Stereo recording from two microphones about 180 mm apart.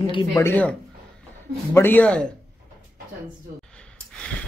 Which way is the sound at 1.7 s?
10° left (ahead or behind).